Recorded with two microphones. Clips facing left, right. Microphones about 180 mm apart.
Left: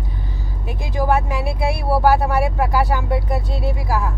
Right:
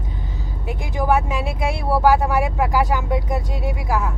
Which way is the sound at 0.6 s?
15° right (ahead or behind).